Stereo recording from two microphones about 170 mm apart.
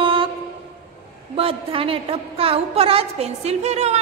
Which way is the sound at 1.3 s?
35° right (ahead or behind).